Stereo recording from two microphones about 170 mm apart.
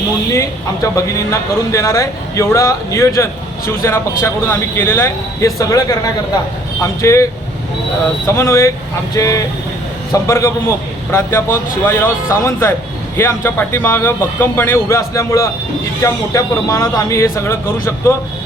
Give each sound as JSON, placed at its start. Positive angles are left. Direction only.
{"t": 0.3, "sound": "speech", "side_deg": 20}
{"t": 7.0, "sound": "speech", "side_deg": 15}
{"t": 8.3, "sound": "speech", "side_deg": 15}